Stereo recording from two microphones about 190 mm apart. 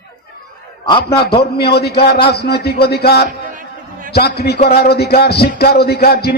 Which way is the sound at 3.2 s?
45° right (ahead or behind).